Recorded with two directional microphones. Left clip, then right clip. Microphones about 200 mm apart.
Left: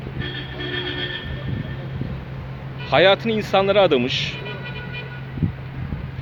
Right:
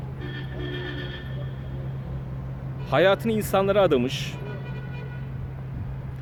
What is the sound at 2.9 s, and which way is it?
Speech, 10° right (ahead or behind).